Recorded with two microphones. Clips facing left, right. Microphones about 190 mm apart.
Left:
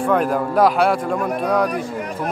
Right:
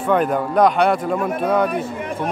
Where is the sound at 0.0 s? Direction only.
Centre (ahead or behind).